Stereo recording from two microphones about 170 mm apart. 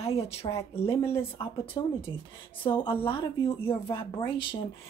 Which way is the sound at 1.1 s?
35° left (ahead or behind).